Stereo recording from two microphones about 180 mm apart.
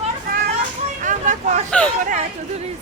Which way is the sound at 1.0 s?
45° right (ahead or behind).